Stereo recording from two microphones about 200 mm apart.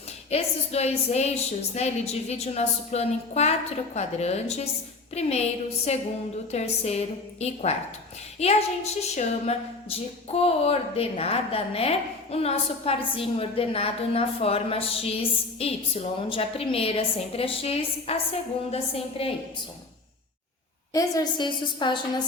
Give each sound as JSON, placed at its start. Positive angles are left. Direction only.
{"t": 0.3, "sound": "a woman's voice", "side_deg": 30}
{"t": 20.9, "sound": "a woman's voice", "side_deg": 15}